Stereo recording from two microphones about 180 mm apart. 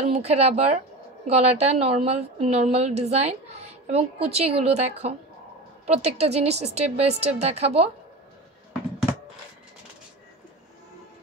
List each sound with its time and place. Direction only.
0.0 s a woman's voice: 35° right (ahead or behind)